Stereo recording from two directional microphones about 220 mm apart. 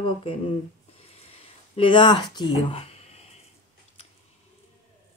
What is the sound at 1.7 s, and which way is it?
Speech, 20° left (ahead or behind).